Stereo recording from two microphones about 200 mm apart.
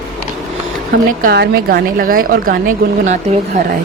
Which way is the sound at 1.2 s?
50° right (ahead or behind).